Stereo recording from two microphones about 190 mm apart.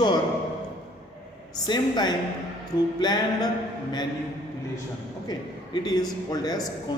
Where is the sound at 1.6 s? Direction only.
20° left (ahead or behind).